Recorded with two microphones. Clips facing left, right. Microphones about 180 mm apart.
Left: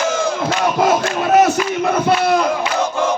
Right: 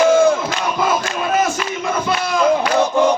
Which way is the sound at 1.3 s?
65° left (ahead or behind).